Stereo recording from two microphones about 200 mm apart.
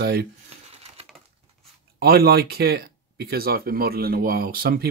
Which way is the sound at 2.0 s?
50° right (ahead or behind).